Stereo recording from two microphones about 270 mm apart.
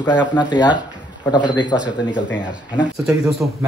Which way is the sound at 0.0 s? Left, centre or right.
Centre.